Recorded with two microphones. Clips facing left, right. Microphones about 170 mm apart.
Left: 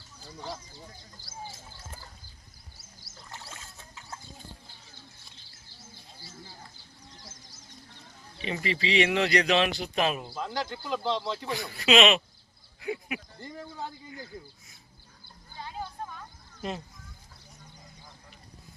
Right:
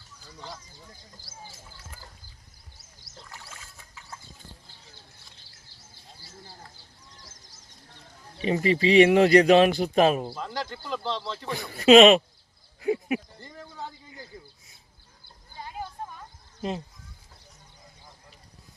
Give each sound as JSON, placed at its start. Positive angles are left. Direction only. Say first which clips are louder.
{"t": 1.3, "sound": "speech", "louder": "left 5 dB", "side_deg": -10}
{"t": 3.3, "sound": "a sound", "louder": "left 4 dB", "side_deg": 20}
{"t": 8.4, "sound": "a man's voice", "louder": "right 8 dB", "side_deg": -40}
{"t": 10.3, "sound": "speech", "louder": "left 1 dB", "side_deg": 0}
{"t": 11.5, "sound": "a man's voice", "louder": "right 9 dB", "side_deg": -45}
{"t": 12.8, "sound": "a sound", "louder": "right 8 dB", "side_deg": -30}
{"t": 13.4, "sound": "speech", "louder": "left 1 dB", "side_deg": 10}
{"t": 16.6, "sound": "speech", "louder": "right 4 dB", "side_deg": -30}